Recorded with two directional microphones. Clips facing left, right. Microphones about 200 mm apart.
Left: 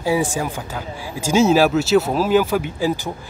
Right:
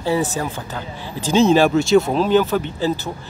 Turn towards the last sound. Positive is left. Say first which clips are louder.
# even
turn(degrees=10)  # may be behind; listen again after turning